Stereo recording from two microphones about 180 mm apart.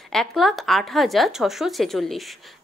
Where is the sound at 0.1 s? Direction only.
5° left (ahead or behind).